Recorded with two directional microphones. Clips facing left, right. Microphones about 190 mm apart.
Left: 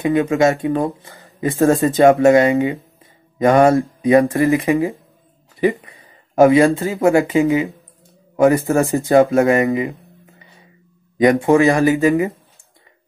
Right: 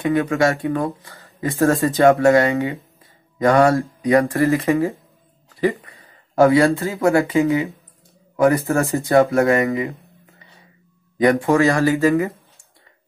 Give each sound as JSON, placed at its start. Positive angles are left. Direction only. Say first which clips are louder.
{"t": 0.0, "sound": "speech", "louder": "left 3 dB", "side_deg": 20}
{"t": 11.1, "sound": "speech", "louder": "left 3 dB", "side_deg": 20}